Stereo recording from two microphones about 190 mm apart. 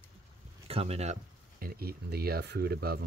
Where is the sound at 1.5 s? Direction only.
50° right (ahead or behind).